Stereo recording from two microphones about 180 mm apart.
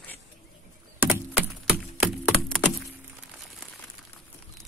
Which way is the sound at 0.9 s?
10° right (ahead or behind).